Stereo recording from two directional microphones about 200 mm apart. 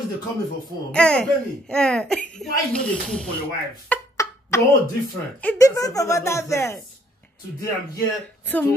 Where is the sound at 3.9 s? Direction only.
15° left (ahead or behind).